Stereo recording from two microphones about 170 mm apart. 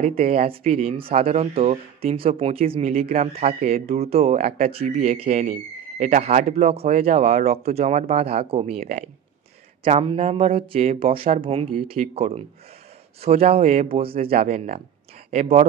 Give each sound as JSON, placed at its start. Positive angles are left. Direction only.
{"t": 0.0, "sound": "speech", "side_deg": -40}